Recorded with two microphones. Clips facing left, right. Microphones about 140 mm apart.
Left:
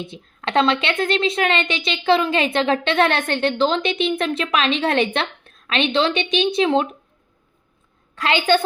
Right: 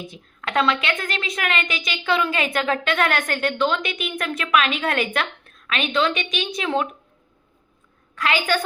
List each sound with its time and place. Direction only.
0.0 s a woman's voice: 25° left (ahead or behind)
8.1 s a woman's voice: 30° left (ahead or behind)